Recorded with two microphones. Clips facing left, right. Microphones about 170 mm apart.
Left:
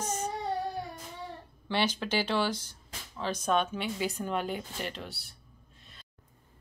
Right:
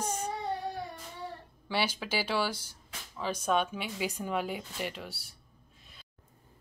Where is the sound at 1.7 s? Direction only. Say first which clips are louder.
Left 2 dB; 10° right (ahead or behind).